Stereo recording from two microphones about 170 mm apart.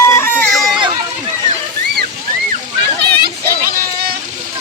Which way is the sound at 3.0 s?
70° right (ahead or behind).